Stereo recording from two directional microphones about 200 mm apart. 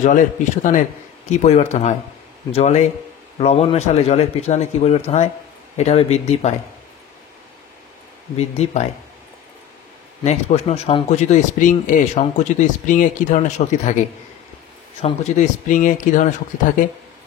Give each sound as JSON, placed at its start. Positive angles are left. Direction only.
{"t": 0.0, "sound": "speech", "side_deg": 40}
{"t": 8.4, "sound": "speech", "side_deg": 35}
{"t": 10.2, "sound": "speech", "side_deg": 30}